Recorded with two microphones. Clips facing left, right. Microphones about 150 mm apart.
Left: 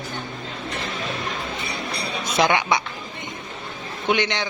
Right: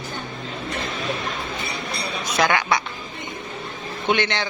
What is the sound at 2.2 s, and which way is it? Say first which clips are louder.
Speech: left 1 dB; 25° left (ahead or behind).